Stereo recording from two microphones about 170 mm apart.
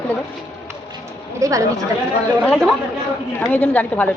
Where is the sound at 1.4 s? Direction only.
20° right (ahead or behind).